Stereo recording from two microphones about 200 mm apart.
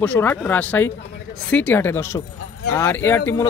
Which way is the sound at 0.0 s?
10° left (ahead or behind).